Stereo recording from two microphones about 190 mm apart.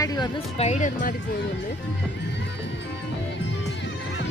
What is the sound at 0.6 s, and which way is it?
Speech, 40° left (ahead or behind).